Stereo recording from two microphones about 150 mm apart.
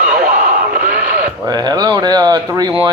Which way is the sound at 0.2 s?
80° right.